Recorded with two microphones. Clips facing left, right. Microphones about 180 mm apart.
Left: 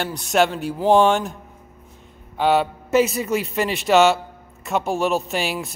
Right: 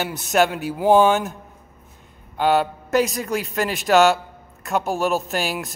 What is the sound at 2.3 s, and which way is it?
A man's voice, centre (ahead or behind).